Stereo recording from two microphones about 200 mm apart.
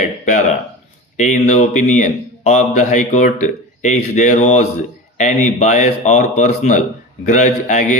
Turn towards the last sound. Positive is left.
turn(degrees=40)  # may be behind; listen again after turning